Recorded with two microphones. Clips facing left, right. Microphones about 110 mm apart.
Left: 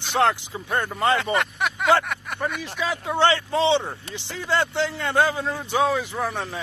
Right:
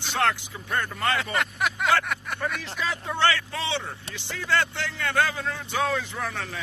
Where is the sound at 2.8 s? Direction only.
15° left (ahead or behind).